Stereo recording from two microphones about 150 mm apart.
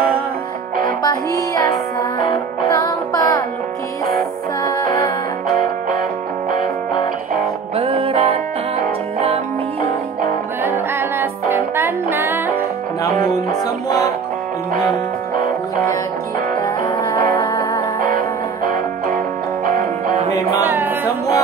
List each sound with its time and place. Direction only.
1.0 s music: 25° left (ahead or behind)
7.7 s music: 40° right (ahead or behind)
10.6 s music: 15° right (ahead or behind)
16.6 s music: 30° left (ahead or behind)
18.7 s music: 70° right (ahead or behind)
20.6 s music: 10° right (ahead or behind)